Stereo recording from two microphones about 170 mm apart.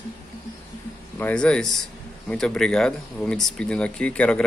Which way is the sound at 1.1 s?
10° left (ahead or behind).